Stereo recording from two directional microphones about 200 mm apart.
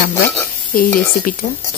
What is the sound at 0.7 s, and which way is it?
Speech, 45° left (ahead or behind).